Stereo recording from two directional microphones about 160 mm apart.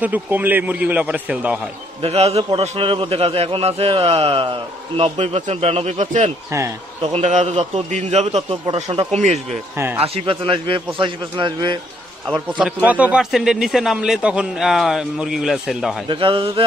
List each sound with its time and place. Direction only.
0.0 s a man's voice: 10° right (ahead or behind)
2.0 s a man's voice: 40° right (ahead or behind)
8.4 s a man's voice: 30° right (ahead or behind)
9.1 s a man's voice: 45° right (ahead or behind)
9.8 s a man's voice: 15° right (ahead or behind)
10.0 s a man's voice: 35° right (ahead or behind)
12.3 s a man's voice: 5° right (ahead or behind)
16.1 s a man's voice: 30° right (ahead or behind)